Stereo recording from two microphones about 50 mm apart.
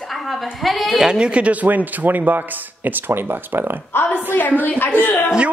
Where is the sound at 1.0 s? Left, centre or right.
Centre; by 3.8 s right.